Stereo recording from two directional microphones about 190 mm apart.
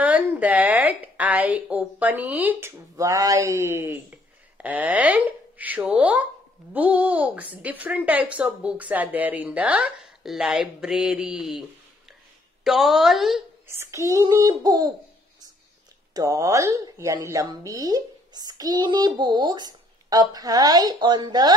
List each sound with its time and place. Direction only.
0.0 s a woman's voice: 10° right (ahead or behind)
12.6 s speech: centre (ahead or behind)
13.7 s speech: 15° right (ahead or behind)
16.1 s speech: 20° right (ahead or behind)